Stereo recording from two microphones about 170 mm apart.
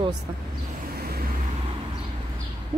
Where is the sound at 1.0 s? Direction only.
65° right (ahead or behind).